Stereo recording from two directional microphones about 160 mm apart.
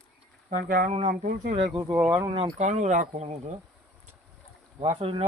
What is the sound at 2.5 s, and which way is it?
Speech, 45° right (ahead or behind).